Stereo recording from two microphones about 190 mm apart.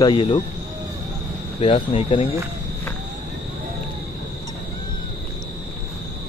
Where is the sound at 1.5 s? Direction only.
30° left (ahead or behind).